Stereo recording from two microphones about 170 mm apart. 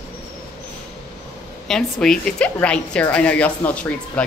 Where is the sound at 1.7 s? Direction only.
Centre (ahead or behind).